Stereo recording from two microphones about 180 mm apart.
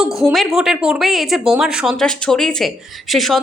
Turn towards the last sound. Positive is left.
turn(degrees=0)  # may be behind; listen again after turning